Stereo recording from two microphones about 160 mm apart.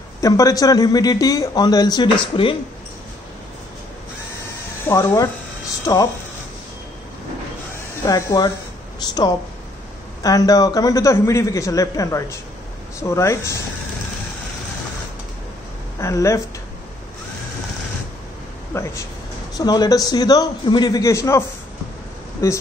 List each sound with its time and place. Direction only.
0.2 s a man's voice: 20° left (ahead or behind)
4.8 s a man's voice: 15° left (ahead or behind)
8.0 s a man's voice: 20° left (ahead or behind)
16.0 s a man's voice: 20° left (ahead or behind)
18.7 s a man's voice: 15° left (ahead or behind)